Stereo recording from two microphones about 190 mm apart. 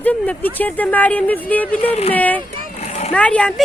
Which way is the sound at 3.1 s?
5° left (ahead or behind).